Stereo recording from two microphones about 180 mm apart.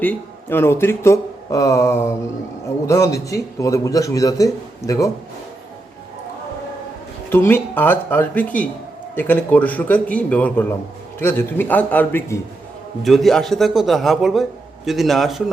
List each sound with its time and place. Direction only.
0.0 s speech: 10° left (ahead or behind)
7.3 s speech: 10° left (ahead or behind)
13.0 s a man's voice: centre (ahead or behind)